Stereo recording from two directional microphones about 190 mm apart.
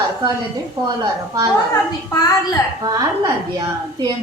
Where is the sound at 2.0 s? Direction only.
20° left (ahead or behind).